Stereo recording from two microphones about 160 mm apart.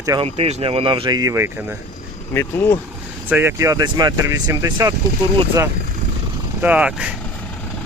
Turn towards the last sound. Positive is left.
turn(degrees=-5)  # may be behind; listen again after turning